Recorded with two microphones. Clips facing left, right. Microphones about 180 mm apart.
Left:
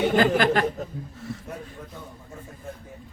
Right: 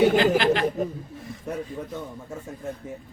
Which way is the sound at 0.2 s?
50° left (ahead or behind).